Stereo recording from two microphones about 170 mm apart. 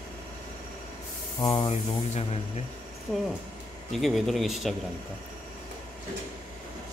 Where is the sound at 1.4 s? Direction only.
25° left (ahead or behind).